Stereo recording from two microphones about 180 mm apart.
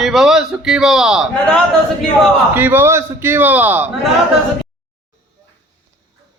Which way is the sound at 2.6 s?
10° right (ahead or behind).